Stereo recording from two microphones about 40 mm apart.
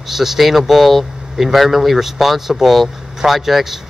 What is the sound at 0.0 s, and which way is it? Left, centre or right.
Speech, centre.